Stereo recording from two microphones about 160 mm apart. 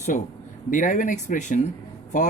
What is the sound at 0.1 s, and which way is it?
Speech, 50° left (ahead or behind).